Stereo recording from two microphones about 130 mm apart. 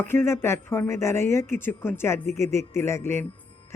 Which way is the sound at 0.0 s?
15° left (ahead or behind).